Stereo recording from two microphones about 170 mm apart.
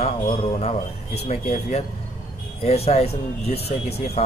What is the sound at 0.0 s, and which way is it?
Speech, 35° left (ahead or behind).